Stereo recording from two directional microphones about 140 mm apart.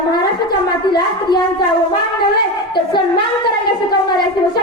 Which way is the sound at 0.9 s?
35° left (ahead or behind).